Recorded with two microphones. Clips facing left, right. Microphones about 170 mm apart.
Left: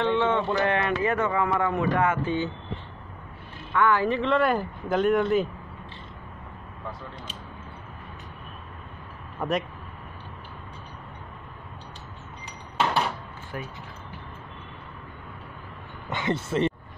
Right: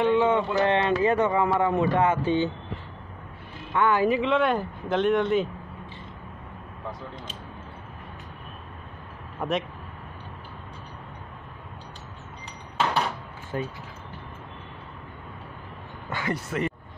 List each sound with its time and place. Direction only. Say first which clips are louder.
0.0 s a sound: right 2 dB; 15° right (ahead or behind)
0.6 s speech: right 3 dB; 25° right (ahead or behind)
3.7 s speech: right 1 dB; 20° right (ahead or behind); by 5.5 s 5° left (ahead or behind)
9.4 s speech: even; centre (ahead or behind)
12.8 s a sound: even; 5° left (ahead or behind)
13.5 s speech: right 6 dB; 25° right (ahead or behind)
16.1 s speech: left 2 dB; 20° left (ahead or behind)